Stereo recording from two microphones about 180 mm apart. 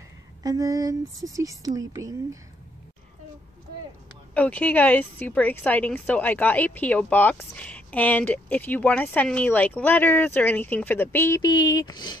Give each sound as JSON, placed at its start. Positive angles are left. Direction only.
{"t": 0.4, "sound": "speech", "side_deg": -20}
{"t": 4.3, "sound": "a woman's voice", "side_deg": 5}